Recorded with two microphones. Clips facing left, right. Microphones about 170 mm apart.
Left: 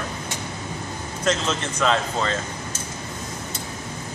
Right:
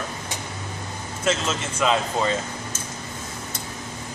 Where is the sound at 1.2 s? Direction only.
5° right (ahead or behind).